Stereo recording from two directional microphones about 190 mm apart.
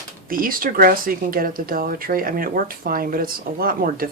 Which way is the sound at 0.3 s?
50° right (ahead or behind).